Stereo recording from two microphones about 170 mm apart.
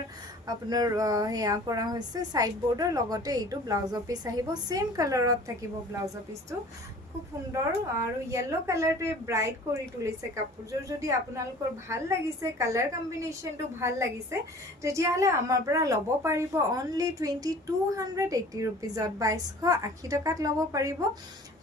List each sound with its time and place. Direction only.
0.4 s a woman's voice: 20° right (ahead or behind)
7.5 s a woman's voice: 20° right (ahead or behind)